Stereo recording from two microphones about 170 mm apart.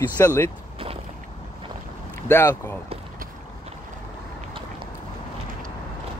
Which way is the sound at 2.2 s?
15° left (ahead or behind).